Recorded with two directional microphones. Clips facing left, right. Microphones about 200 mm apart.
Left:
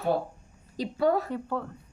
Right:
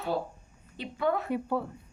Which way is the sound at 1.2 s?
10° right (ahead or behind).